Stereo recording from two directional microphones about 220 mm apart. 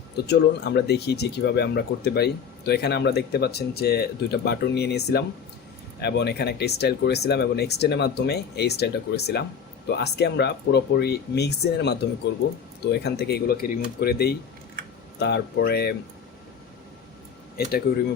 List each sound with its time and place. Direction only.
0.3 s speech: 50° left (ahead or behind)